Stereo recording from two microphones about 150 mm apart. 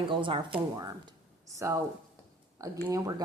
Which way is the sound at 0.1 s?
35° right (ahead or behind).